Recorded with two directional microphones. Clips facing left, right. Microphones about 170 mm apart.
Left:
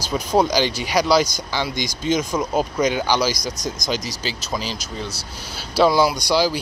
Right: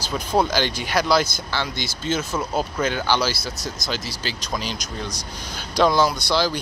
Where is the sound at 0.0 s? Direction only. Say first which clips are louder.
Left 3 dB; 10° left (ahead or behind).